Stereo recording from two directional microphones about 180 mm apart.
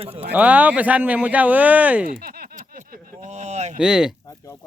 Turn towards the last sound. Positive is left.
turn(degrees=-5)  # may be behind; listen again after turning